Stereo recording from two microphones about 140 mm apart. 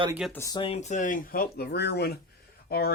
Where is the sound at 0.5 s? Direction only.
45° left (ahead or behind); by 1.6 s 90° left.